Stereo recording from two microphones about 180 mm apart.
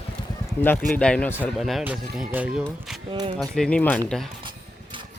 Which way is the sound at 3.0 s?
30° right (ahead or behind).